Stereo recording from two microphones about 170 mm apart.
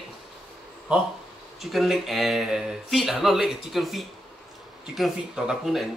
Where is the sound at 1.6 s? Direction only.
Centre (ahead or behind).